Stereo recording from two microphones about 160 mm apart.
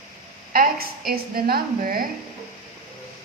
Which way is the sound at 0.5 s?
65° right (ahead or behind).